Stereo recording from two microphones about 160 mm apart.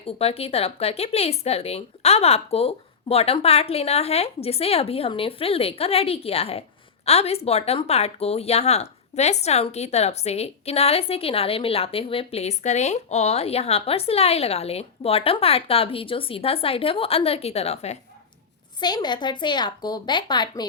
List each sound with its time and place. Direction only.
0.2 s speech: 40° left (ahead or behind)
18.8 s a woman's voice: 25° left (ahead or behind)